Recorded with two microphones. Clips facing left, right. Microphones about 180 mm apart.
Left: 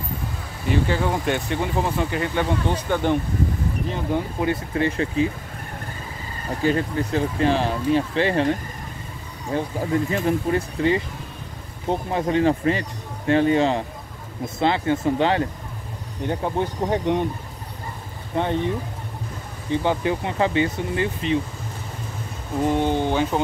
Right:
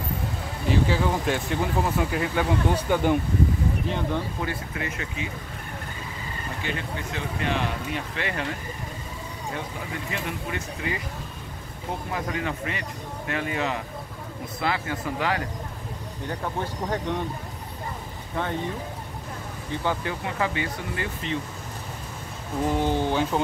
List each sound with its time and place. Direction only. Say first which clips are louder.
0.7 s speech: left 2 dB; centre (ahead or behind)
4.1 s speech: left 6 dB; 20° left (ahead or behind)
4.7 s speech: left 11 dB; 30° left (ahead or behind)
6.6 s speech: left 12 dB; 40° left (ahead or behind)
12.1 s speech: left 10 dB; 30° left (ahead or behind)
18.3 s speech: left 6 dB; 20° left (ahead or behind)
19.7 s speech: left 7 dB; 20° left (ahead or behind)
22.7 s speech: left 3 dB; 5° right (ahead or behind)